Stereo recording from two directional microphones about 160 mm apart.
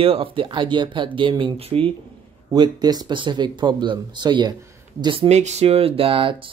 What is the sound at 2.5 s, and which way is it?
Speech, 25° right (ahead or behind).